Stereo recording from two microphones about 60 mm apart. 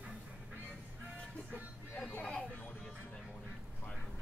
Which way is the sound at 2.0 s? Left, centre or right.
Left.